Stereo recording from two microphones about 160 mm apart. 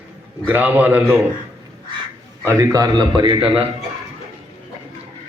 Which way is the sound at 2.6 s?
20° right (ahead or behind).